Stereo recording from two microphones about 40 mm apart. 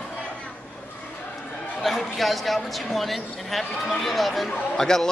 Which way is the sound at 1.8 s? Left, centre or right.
Centre.